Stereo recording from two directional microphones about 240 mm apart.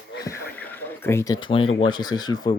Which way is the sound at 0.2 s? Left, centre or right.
Centre.